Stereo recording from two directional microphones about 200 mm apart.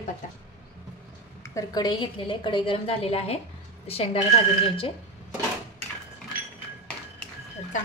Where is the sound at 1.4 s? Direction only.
20° left (ahead or behind).